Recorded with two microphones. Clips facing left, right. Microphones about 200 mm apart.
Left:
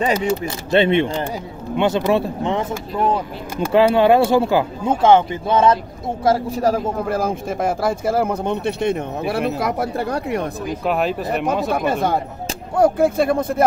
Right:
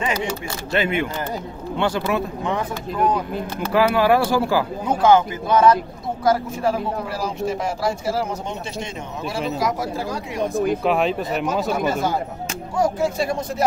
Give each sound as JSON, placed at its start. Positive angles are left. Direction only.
{"t": 0.7, "sound": "speech", "side_deg": 30}
{"t": 6.6, "sound": "speech", "side_deg": 45}
{"t": 10.9, "sound": "speech", "side_deg": 0}
{"t": 11.7, "sound": "speech", "side_deg": 60}